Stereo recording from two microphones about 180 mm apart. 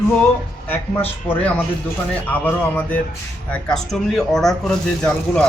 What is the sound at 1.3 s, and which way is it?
Speech, 10° left (ahead or behind).